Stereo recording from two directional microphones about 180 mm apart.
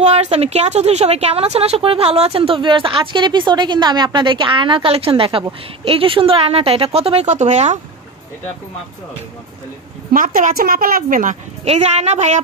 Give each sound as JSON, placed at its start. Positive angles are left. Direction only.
{"t": 0.0, "sound": "a woman's voice", "side_deg": -35}
{"t": 10.1, "sound": "a woman's voice", "side_deg": -50}